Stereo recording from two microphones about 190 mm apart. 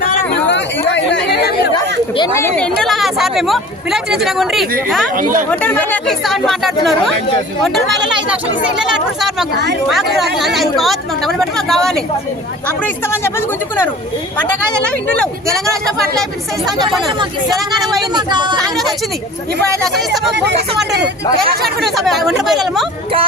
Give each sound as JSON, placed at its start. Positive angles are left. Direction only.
{"t": 0.4, "sound": "chatter", "side_deg": 70}
{"t": 1.7, "sound": "speech", "side_deg": 20}
{"t": 5.1, "sound": "speech", "side_deg": -45}
{"t": 5.5, "sound": "speech", "side_deg": 10}
{"t": 8.8, "sound": "speech", "side_deg": -5}
{"t": 14.8, "sound": "speech", "side_deg": 5}
{"t": 18.1, "sound": "speech", "side_deg": -25}
{"t": 18.6, "sound": "speech", "side_deg": 0}
{"t": 21.9, "sound": "speech", "side_deg": 0}